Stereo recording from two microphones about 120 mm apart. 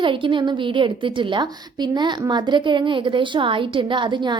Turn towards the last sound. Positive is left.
turn(degrees=-40)  # may be behind; listen again after turning